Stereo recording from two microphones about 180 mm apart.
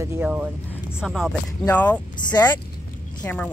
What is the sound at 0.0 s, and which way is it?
Speech, 10° right (ahead or behind).